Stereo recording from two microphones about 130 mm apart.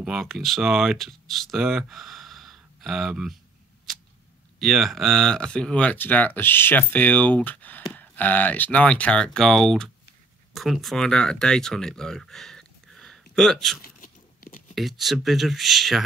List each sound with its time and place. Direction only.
0.0 s speech: centre (ahead or behind)
4.6 s speech: centre (ahead or behind)
13.8 s biting: 90° left
14.8 s speech: centre (ahead or behind)